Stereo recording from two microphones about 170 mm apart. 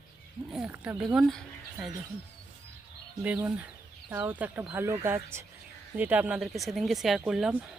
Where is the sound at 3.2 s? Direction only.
10° right (ahead or behind).